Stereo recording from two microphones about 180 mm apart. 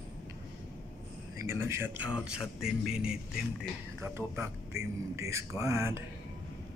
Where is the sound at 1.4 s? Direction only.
15° right (ahead or behind).